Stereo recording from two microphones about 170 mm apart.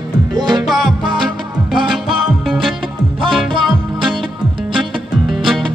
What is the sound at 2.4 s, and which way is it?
Music, centre (ahead or behind).